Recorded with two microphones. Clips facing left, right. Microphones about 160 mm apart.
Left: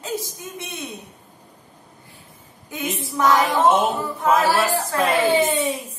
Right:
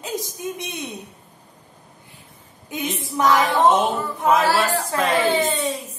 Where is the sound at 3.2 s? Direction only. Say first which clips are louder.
Even; 10° left (ahead or behind).